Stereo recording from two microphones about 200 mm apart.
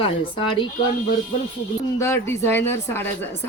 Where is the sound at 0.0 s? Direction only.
25° left (ahead or behind).